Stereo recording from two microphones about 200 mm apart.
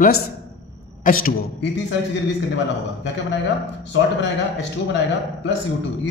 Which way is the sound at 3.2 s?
60° left (ahead or behind).